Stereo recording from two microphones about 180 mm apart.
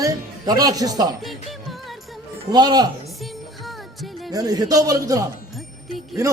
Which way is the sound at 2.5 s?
25° right (ahead or behind).